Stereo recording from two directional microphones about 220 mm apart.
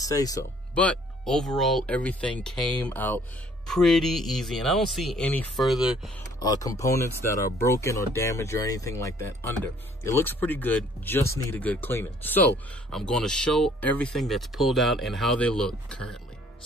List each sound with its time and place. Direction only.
0.0 s speech: 15° left (ahead or behind)
0.7 s speech: 5° left (ahead or behind)
6.4 s speech: 15° left (ahead or behind)